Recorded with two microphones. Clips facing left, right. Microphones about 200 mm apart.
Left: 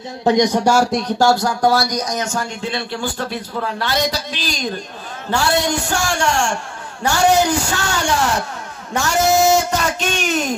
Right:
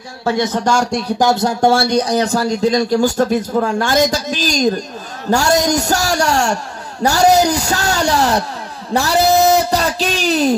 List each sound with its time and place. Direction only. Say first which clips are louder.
0.2 s speech: left 2 dB; 15° left (ahead or behind)
1.2 s speech: right 2 dB; 25° right (ahead or behind)
8.9 s a sound: right 3 dB; 35° right (ahead or behind)